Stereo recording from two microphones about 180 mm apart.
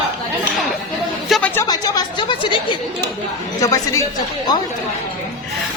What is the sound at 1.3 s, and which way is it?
Speech, 10° left (ahead or behind).